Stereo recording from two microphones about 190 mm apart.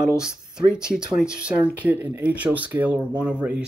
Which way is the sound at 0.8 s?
5° right (ahead or behind).